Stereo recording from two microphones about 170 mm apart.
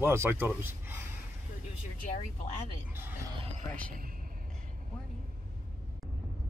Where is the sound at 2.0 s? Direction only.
45° left (ahead or behind).